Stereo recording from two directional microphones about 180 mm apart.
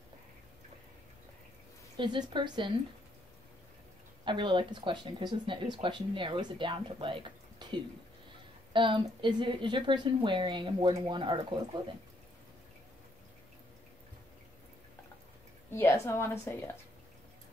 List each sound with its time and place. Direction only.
2.0 s speech: 25° right (ahead or behind)
4.2 s speech: 25° right (ahead or behind)
15.7 s a woman's voice: 15° left (ahead or behind)